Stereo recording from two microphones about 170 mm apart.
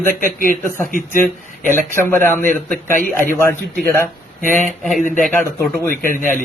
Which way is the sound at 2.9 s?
55° right (ahead or behind).